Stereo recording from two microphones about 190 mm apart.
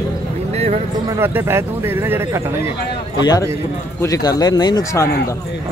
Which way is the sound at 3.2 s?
20° left (ahead or behind).